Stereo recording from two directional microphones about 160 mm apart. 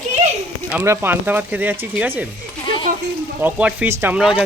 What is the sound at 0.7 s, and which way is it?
Speech, 15° right (ahead or behind).